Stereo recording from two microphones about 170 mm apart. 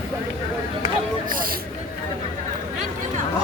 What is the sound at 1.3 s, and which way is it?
Speech, 55° right (ahead or behind).